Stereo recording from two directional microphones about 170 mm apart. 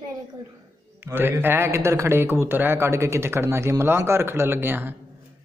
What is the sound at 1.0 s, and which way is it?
A man's voice, 15° right (ahead or behind).